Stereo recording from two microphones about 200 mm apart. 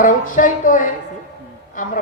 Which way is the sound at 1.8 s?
40° left (ahead or behind).